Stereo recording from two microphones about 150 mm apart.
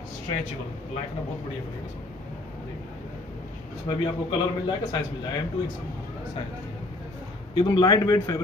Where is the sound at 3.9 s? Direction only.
25° left (ahead or behind).